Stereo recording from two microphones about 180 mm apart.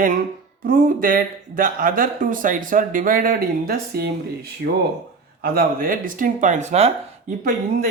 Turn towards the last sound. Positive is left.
turn(degrees=-50)  # may be behind; listen again after turning